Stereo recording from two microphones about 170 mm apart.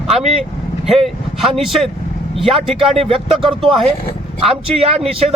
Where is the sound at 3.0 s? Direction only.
35° right (ahead or behind).